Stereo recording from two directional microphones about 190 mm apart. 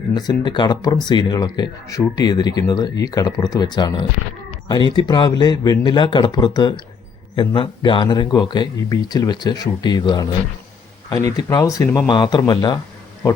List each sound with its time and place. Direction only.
0.1 s speech: 20° left (ahead or behind)